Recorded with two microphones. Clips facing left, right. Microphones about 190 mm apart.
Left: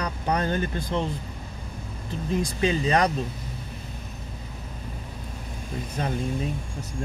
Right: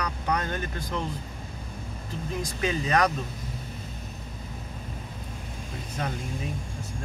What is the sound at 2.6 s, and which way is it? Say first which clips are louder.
Speech: left 2 dB; 30° left (ahead or behind).